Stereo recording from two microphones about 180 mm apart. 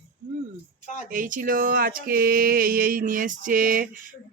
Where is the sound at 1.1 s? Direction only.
50° right (ahead or behind).